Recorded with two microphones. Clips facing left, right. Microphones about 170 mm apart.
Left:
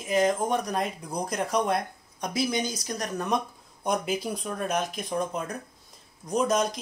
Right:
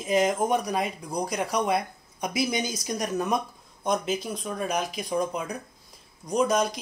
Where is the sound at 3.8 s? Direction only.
5° left (ahead or behind).